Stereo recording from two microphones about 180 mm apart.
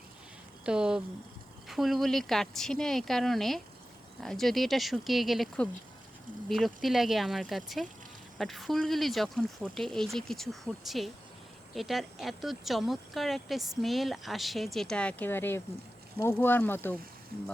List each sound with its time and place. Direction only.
0.6 s speech: 5° right (ahead or behind); by 17.0 s 10° left (ahead or behind)